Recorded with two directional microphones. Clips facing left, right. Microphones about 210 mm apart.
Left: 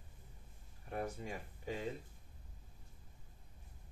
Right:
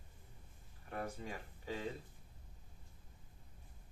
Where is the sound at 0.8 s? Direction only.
25° left (ahead or behind).